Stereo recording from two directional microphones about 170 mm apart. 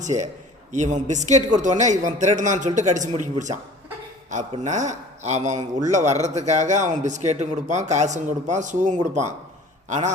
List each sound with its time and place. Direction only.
0.0 s a man's voice: 45° right (ahead or behind)